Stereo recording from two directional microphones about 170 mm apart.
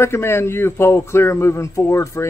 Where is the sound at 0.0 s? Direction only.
15° left (ahead or behind).